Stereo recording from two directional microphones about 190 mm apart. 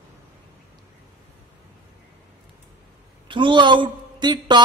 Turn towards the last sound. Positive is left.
turn(degrees=-25)  # may be behind; listen again after turning